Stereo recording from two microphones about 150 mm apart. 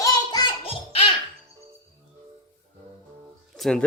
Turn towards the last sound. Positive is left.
turn(degrees=5)  # may be behind; listen again after turning